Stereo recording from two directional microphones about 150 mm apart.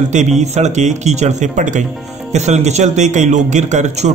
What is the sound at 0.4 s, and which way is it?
Speech, 50° right (ahead or behind).